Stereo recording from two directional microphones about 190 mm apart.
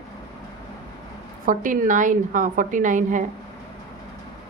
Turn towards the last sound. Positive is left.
turn(degrees=-40)  # may be behind; listen again after turning